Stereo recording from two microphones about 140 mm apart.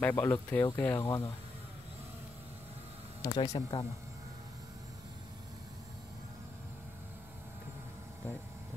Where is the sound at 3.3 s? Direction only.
30° left (ahead or behind).